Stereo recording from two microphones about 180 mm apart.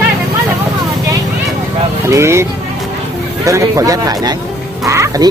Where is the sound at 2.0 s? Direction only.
15° right (ahead or behind).